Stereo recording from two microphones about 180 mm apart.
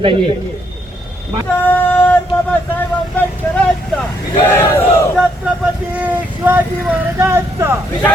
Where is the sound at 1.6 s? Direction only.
10° left (ahead or behind).